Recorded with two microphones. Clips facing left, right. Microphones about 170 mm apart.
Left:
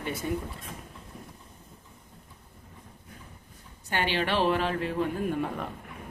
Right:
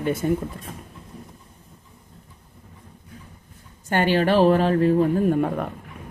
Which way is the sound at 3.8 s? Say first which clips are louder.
Right 9 dB; 45° right (ahead or behind).